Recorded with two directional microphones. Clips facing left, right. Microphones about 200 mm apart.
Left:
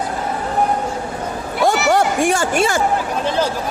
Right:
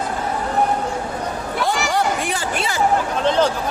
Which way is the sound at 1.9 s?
45° left (ahead or behind).